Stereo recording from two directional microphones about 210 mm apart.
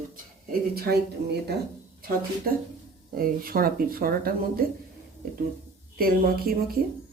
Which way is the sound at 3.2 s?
45° right (ahead or behind).